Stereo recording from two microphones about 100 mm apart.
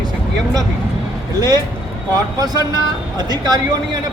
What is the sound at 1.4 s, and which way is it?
Speech, 40° right (ahead or behind).